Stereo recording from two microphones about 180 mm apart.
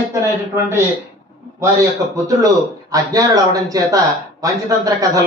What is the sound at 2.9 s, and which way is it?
Speech, 20° right (ahead or behind).